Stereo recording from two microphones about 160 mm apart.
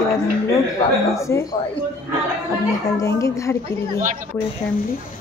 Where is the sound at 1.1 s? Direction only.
20° left (ahead or behind).